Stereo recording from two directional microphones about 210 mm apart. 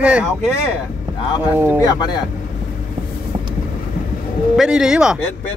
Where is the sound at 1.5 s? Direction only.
10° right (ahead or behind).